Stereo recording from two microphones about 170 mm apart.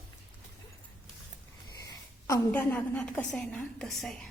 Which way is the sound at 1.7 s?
20° left (ahead or behind).